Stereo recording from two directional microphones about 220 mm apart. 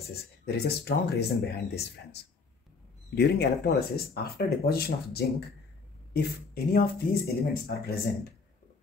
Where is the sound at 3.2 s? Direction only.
45° left (ahead or behind).